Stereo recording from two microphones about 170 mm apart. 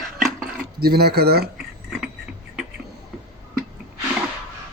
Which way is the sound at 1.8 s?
Centre (ahead or behind).